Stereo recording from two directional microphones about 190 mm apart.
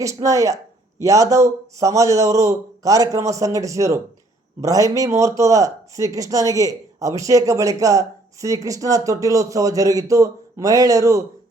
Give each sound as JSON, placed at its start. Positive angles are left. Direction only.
{"t": 0.0, "sound": "speech", "side_deg": -15}